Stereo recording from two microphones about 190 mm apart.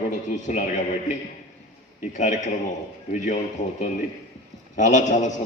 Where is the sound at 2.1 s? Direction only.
40° left (ahead or behind).